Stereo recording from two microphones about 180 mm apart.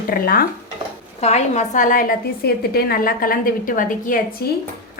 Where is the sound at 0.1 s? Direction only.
55° left (ahead or behind).